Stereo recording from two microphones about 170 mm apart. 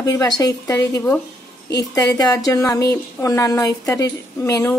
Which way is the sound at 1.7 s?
20° left (ahead or behind).